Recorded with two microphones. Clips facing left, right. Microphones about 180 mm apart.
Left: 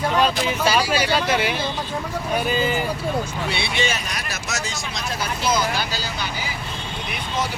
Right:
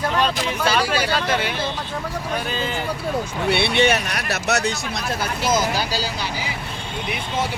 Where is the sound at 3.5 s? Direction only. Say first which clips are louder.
Right 9 dB; 60° right (ahead or behind).